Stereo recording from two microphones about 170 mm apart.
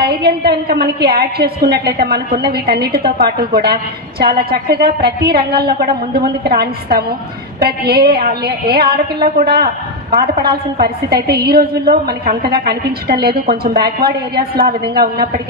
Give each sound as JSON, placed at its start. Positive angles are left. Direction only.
{"t": 0.0, "sound": "a woman's voice", "side_deg": -70}